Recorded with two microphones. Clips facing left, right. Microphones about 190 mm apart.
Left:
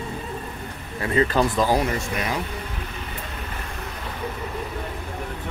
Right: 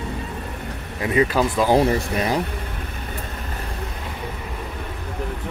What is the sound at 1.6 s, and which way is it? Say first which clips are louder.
Speech: right 5 dB; 30° right (ahead or behind).